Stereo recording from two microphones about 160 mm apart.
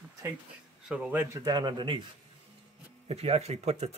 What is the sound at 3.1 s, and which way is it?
Speech, 40° right (ahead or behind).